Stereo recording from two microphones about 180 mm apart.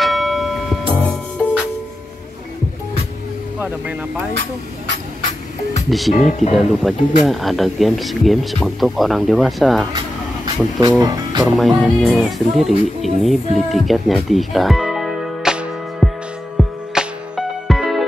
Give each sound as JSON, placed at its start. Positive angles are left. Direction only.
{"t": 0.0, "sound": "music", "side_deg": 0}
{"t": 3.5, "sound": "speech", "side_deg": -5}
{"t": 5.9, "sound": "speech", "side_deg": 0}
{"t": 6.1, "sound": "speech", "side_deg": 45}
{"t": 6.5, "sound": "speech", "side_deg": 0}
{"t": 9.9, "sound": "vehicle", "side_deg": -25}
{"t": 11.0, "sound": "speech", "side_deg": -20}
{"t": 11.5, "sound": "speech", "side_deg": 0}
{"t": 16.5, "sound": "music", "side_deg": 0}